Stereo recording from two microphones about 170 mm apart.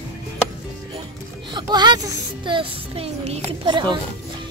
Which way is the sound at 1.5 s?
25° right (ahead or behind).